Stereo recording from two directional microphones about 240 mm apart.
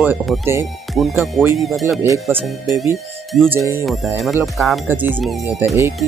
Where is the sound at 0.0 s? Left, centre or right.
Centre.